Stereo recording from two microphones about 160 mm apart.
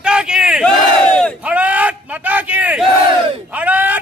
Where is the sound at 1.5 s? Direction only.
10° right (ahead or behind).